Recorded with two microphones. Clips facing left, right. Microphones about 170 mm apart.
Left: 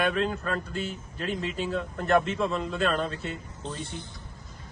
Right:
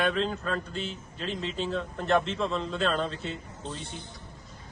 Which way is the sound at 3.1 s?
55° left (ahead or behind).